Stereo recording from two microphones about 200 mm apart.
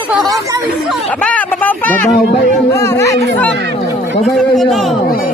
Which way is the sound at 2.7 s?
15° left (ahead or behind).